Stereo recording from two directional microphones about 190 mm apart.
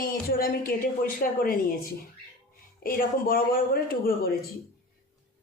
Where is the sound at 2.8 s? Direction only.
50° left (ahead or behind).